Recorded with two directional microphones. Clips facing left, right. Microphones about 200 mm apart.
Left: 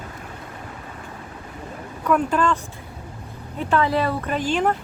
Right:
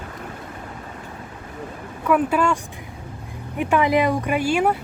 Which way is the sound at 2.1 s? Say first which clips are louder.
Right 1 dB; 5° right (ahead or behind).